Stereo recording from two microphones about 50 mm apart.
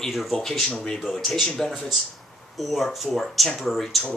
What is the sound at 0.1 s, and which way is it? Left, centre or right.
Speech, centre.